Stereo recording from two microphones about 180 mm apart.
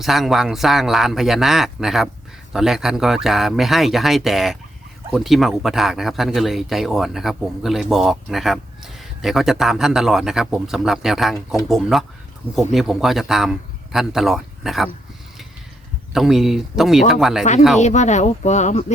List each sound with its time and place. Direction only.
0.0 s speech: centre (ahead or behind)
16.1 s speech: centre (ahead or behind)
17.7 s speech: 40° left (ahead or behind)